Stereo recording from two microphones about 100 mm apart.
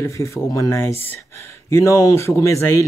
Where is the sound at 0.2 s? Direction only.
30° left (ahead or behind).